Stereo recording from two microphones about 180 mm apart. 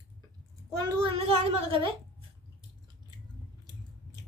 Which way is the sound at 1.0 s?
35° right (ahead or behind).